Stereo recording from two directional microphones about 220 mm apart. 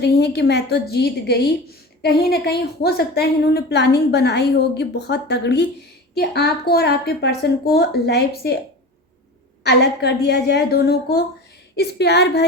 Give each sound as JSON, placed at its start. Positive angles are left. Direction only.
{"t": 0.0, "sound": "a woman's voice", "side_deg": 50}
{"t": 9.6, "sound": "a woman's voice", "side_deg": 50}